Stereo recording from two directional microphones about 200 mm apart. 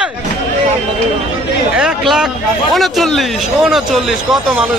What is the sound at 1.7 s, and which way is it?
Speech, 5° right (ahead or behind).